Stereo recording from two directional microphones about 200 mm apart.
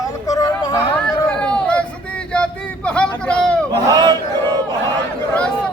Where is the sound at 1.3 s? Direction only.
5° left (ahead or behind).